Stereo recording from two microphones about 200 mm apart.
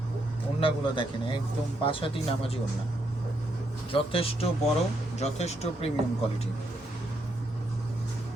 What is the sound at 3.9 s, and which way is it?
Speech, 30° left (ahead or behind).